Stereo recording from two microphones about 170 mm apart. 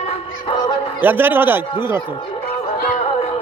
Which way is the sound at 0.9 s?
10° right (ahead or behind).